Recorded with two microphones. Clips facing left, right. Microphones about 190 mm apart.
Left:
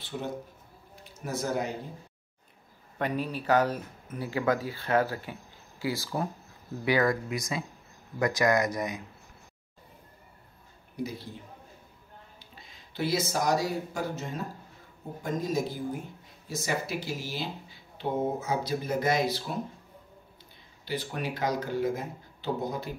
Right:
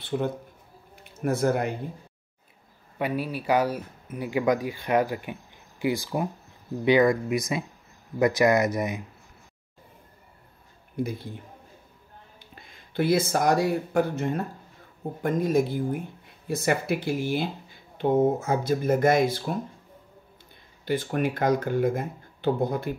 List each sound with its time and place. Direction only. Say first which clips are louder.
0.1 s speech: right 7 dB; 55° right (ahead or behind)
3.0 s speech: right 2 dB; 10° right (ahead or behind)
11.0 s speech: right 5 dB; 55° right (ahead or behind)
12.5 s speech: right 7 dB; 55° right (ahead or behind)
20.8 s speech: right 8 dB; 50° right (ahead or behind)